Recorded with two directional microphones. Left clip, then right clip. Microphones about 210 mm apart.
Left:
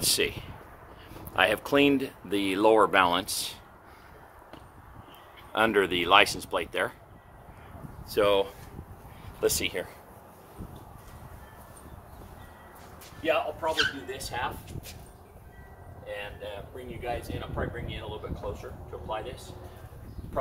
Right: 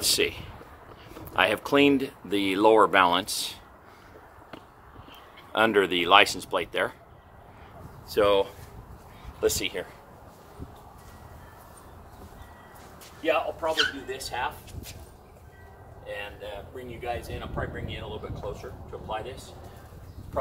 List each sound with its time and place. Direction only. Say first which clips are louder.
0.0 s speech: right 2 dB; 10° right (ahead or behind)
5.5 s speech: right 2 dB; 5° right (ahead or behind)
8.1 s speech: right 2 dB; centre (ahead or behind)
9.4 s speech: right 1 dB; 15° left (ahead or behind)
13.2 s speech: right 1 dB; 10° right (ahead or behind)
16.1 s speech: right 1 dB; 10° right (ahead or behind)